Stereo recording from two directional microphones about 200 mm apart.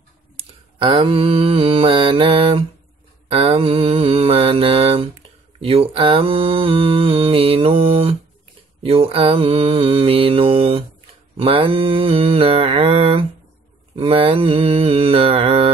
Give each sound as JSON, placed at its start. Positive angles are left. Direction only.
{"t": 0.4, "sound": "mantra", "side_deg": -25}